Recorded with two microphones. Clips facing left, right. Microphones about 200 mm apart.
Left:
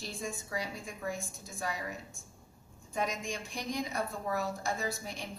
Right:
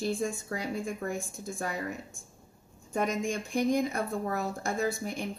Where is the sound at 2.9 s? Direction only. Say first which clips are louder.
Right 6 dB; 55° right (ahead or behind).